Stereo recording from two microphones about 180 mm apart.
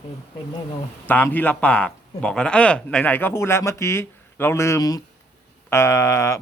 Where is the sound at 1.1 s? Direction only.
10° left (ahead or behind).